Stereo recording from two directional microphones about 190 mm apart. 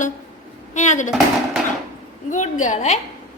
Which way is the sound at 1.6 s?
Centre (ahead or behind).